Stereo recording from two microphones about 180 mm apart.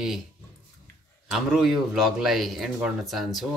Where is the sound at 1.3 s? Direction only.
Centre (ahead or behind).